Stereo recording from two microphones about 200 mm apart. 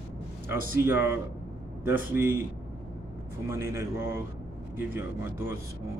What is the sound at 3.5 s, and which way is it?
Speech, 15° right (ahead or behind).